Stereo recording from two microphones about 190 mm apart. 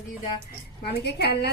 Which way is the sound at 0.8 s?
60° left (ahead or behind).